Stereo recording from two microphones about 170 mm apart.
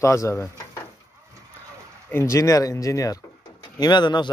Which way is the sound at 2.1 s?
15° left (ahead or behind).